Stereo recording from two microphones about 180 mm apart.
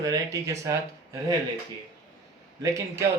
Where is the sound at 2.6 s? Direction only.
15° right (ahead or behind).